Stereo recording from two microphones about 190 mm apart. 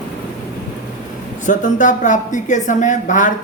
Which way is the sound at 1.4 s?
40° left (ahead or behind).